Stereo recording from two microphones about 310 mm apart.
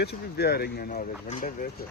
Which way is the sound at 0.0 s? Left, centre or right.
Left.